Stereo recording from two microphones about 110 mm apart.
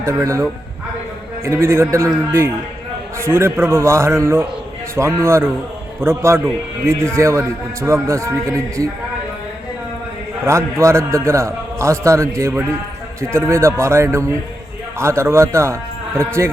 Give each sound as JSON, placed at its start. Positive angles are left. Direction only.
{"t": 0.0, "sound": "a man's voice", "side_deg": -25}
{"t": 1.5, "sound": "a man's voice", "side_deg": -25}
{"t": 10.4, "sound": "a man's voice", "side_deg": -25}